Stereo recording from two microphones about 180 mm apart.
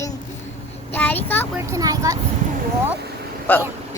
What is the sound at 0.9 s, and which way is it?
Speech, 10° left (ahead or behind).